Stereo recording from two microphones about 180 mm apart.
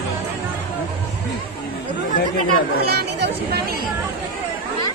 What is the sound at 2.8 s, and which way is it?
Vehicle, 60° right (ahead or behind).